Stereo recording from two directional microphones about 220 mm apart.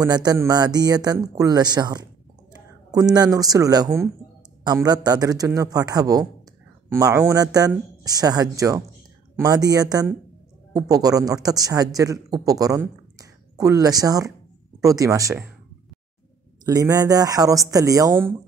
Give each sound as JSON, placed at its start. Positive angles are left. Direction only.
{"t": 0.0, "sound": "speech", "side_deg": -15}
{"t": 16.6, "sound": "speech", "side_deg": -15}